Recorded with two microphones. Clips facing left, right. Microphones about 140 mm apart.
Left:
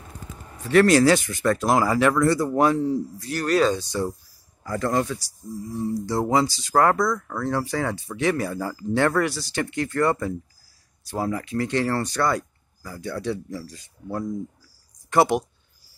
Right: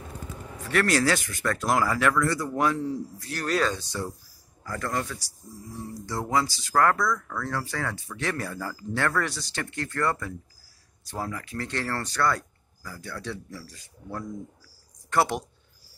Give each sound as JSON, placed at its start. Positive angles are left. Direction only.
{"t": 0.7, "sound": "speech", "side_deg": 20}
{"t": 3.6, "sound": "speech", "side_deg": 20}
{"t": 9.2, "sound": "speech", "side_deg": 5}